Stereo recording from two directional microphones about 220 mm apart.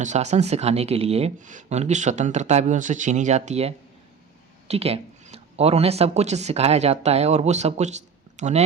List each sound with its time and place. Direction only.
0.0 s speech: 30° right (ahead or behind)